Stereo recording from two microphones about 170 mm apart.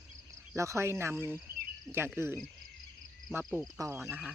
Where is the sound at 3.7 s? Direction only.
15° right (ahead or behind).